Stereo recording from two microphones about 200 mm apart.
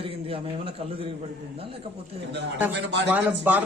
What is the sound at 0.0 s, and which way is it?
A man's voice, 30° right (ahead or behind).